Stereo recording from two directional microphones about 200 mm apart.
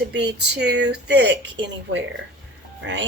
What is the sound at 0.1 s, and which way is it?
Speech, 60° right (ahead or behind).